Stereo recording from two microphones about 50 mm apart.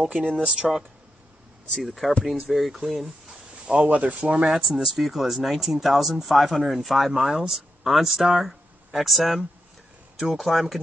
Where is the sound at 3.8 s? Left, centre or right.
Right.